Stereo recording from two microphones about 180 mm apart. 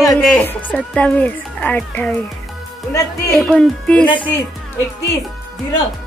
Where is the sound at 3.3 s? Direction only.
Centre (ahead or behind).